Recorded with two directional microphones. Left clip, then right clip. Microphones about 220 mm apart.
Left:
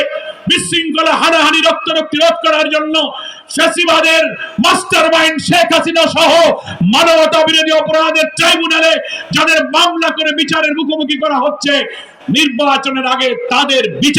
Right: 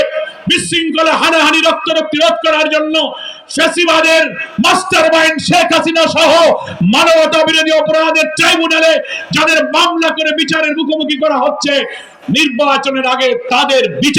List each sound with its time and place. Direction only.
0.0 s a man's voice: 25° left (ahead or behind)